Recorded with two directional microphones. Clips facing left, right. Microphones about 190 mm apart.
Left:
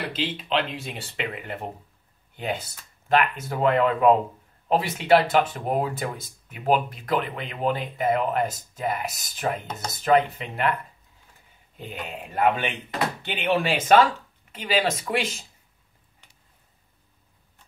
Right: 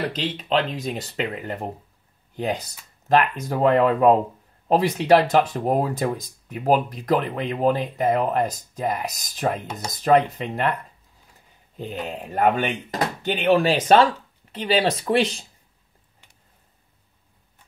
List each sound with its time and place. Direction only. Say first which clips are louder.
0.1 s speech: right 3 dB; 40° right (ahead or behind)
11.7 s speech: right 5 dB; 35° right (ahead or behind)